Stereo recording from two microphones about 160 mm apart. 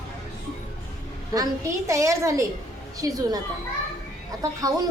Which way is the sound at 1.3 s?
20° right (ahead or behind).